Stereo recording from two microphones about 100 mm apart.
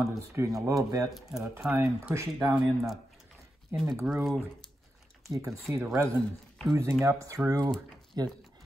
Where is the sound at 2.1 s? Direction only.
30° right (ahead or behind).